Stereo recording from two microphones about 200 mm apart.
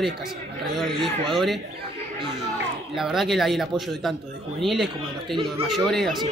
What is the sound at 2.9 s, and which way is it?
Speech, centre (ahead or behind).